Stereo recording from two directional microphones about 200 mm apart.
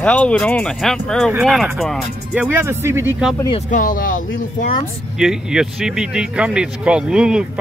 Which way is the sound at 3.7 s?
40° left (ahead or behind).